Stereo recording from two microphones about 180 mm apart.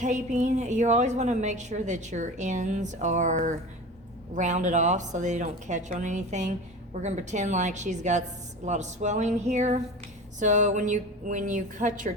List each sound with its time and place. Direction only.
0.0 s a woman's voice: 40° right (ahead or behind)